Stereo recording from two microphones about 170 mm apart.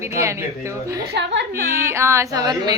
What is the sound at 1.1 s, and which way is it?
Speech, 90° right.